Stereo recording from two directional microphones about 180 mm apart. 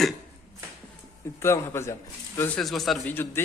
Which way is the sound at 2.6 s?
Centre (ahead or behind).